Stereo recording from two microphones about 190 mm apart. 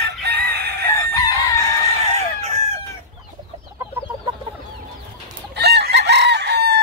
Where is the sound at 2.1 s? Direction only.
35° right (ahead or behind).